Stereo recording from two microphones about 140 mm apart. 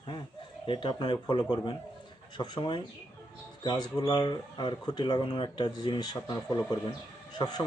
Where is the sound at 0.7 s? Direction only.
35° left (ahead or behind).